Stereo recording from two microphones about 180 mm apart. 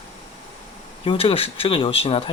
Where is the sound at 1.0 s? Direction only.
30° left (ahead or behind).